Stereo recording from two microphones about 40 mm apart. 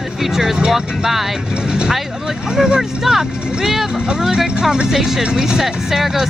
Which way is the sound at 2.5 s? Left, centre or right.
Centre.